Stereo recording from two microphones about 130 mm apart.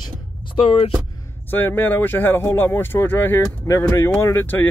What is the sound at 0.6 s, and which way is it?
Speech, 45° left (ahead or behind).